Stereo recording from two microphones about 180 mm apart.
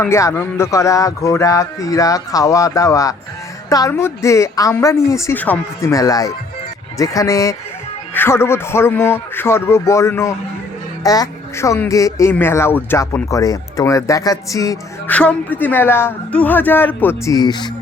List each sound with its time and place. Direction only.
0.0 s speech: 15° left (ahead or behind)
15.1 s speech: 10° left (ahead or behind); by 17.7 s 25° left (ahead or behind)